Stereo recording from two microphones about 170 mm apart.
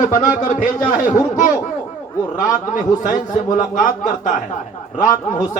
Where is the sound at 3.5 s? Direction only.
50° left (ahead or behind).